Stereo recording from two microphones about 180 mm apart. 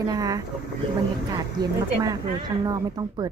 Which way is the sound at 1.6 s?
20° right (ahead or behind).